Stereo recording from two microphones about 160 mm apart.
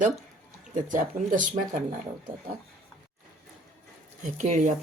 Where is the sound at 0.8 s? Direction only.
55° right (ahead or behind).